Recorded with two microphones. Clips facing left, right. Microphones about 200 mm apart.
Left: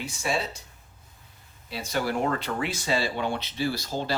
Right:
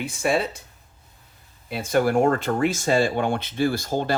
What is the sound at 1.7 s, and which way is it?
Speech, 50° right (ahead or behind).